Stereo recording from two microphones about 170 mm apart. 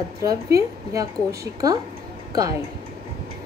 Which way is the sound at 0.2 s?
20° right (ahead or behind).